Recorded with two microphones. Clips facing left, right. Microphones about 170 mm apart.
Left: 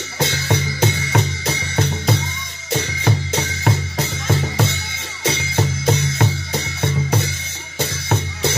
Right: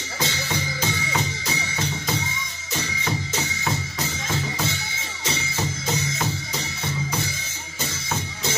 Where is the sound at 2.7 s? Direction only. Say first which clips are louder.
Left 6 dB; 65° left (ahead or behind).